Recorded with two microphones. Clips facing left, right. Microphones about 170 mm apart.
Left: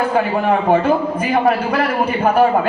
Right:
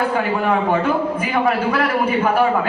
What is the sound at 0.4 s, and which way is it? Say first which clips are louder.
A man's voice: left 4 dB; 45° left (ahead or behind).